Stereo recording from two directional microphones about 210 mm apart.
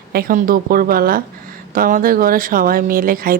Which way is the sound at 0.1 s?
45° right (ahead or behind).